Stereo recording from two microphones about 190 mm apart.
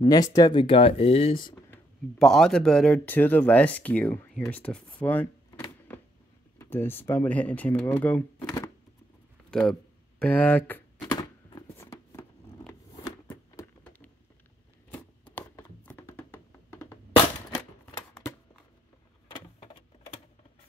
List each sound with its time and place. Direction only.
0.0 s speech: 20° left (ahead or behind)
1.5 s speech: 5° left (ahead or behind)
9.5 s speech: 5° left (ahead or behind)
11.0 s a sound: 20° left (ahead or behind)
13.3 s a sound: 10° left (ahead or behind)
15.3 s computer keyboard: 10° left (ahead or behind)
19.3 s vehicle: 25° left (ahead or behind)